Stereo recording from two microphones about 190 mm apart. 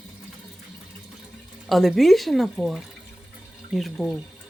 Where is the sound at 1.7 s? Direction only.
Centre (ahead or behind).